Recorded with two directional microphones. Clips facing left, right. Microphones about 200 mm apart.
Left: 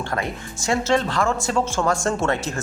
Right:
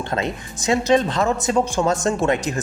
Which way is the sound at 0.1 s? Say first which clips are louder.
Right 2 dB; 20° right (ahead or behind).